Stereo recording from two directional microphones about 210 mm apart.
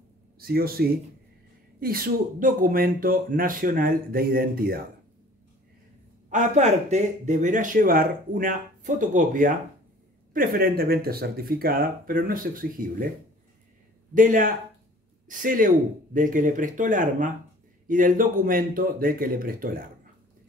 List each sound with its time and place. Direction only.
0.4 s speech: 45° right (ahead or behind)
6.3 s speech: 35° right (ahead or behind)
14.1 s speech: 40° right (ahead or behind)